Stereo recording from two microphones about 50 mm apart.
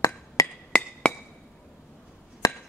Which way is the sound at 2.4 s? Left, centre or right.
Left.